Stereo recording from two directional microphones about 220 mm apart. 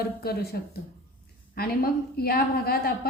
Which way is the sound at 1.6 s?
45° left (ahead or behind).